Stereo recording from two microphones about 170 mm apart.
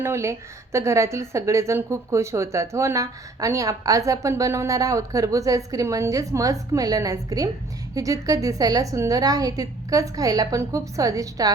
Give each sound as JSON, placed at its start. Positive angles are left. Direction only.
{"t": 0.0, "sound": "a woman's voice", "side_deg": -15}